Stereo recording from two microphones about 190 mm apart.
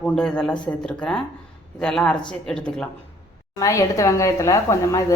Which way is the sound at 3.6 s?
15° left (ahead or behind).